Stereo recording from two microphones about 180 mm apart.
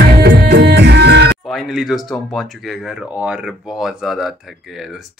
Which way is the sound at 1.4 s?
Centre (ahead or behind).